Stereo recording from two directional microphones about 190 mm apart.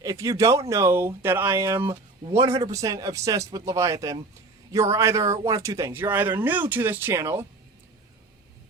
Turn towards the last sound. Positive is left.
turn(degrees=-15)  # may be behind; listen again after turning